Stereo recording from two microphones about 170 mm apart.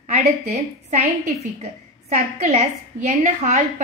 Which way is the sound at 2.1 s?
45° right (ahead or behind).